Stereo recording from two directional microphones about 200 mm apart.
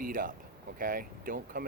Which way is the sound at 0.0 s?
45° right (ahead or behind).